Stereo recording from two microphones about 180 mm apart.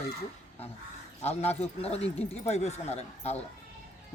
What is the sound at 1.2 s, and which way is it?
A man's voice, 35° left (ahead or behind).